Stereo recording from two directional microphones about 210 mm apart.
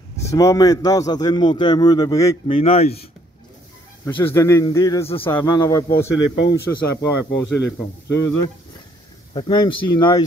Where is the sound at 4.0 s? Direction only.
10° left (ahead or behind).